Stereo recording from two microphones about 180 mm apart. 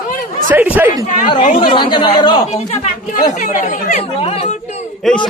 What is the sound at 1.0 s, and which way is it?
Speech, 45° left (ahead or behind).